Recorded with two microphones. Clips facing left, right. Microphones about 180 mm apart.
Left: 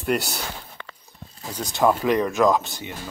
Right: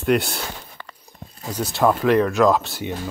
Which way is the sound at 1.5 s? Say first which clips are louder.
Right 1 dB; 5° right (ahead or behind).